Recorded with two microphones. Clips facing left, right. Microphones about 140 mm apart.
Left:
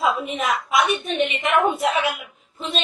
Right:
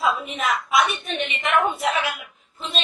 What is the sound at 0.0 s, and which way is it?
A woman's voice, centre (ahead or behind).